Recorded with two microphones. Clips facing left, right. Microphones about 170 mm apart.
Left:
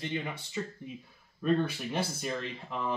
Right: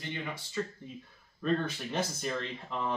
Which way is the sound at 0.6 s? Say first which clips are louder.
Right 2 dB; 15° left (ahead or behind).